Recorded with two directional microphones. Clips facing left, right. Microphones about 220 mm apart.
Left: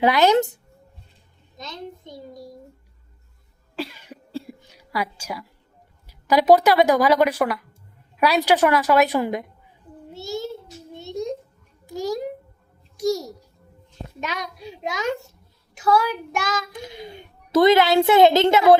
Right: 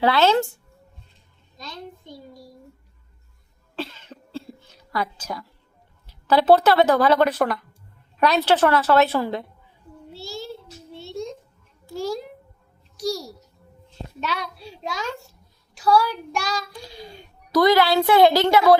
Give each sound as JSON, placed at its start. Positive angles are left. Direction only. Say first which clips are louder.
{"t": 0.0, "sound": "speech", "louder": "left 2 dB", "side_deg": 15}
{"t": 1.5, "sound": "a child's voice", "louder": "left 2 dB", "side_deg": 20}
{"t": 3.8, "sound": "cough", "louder": "left 1 dB", "side_deg": 10}
{"t": 6.1, "sound": "speech", "louder": "left 1 dB", "side_deg": 10}
{"t": 10.2, "sound": "child singing", "louder": "left 6 dB", "side_deg": 20}
{"t": 11.9, "sound": "a sound", "louder": "left 1 dB", "side_deg": 15}
{"t": 13.0, "sound": "a child's voice", "louder": "left 4 dB", "side_deg": 20}